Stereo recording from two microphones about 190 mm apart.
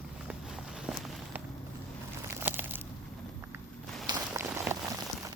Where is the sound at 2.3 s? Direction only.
10° right (ahead or behind).